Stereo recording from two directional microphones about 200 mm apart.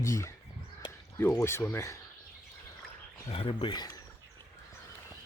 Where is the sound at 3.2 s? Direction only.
30° left (ahead or behind).